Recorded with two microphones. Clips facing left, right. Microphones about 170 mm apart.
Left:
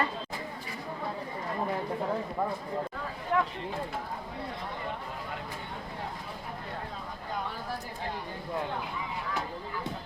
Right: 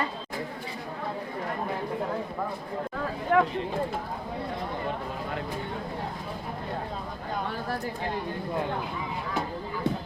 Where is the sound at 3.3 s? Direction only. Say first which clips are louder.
Right 6 dB; 70° right (ahead or behind).